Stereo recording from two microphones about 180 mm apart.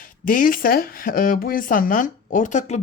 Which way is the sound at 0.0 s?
50° left (ahead or behind).